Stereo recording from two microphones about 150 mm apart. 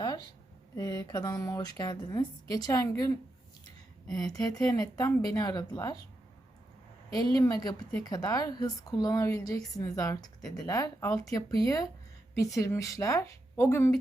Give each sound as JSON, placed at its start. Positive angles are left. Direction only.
{"t": 0.8, "sound": "a woman's voice", "side_deg": 25}
{"t": 4.4, "sound": "a woman's voice", "side_deg": 25}
{"t": 7.3, "sound": "a woman's voice", "side_deg": 25}